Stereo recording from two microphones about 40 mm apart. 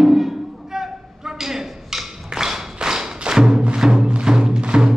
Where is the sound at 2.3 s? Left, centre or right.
Centre.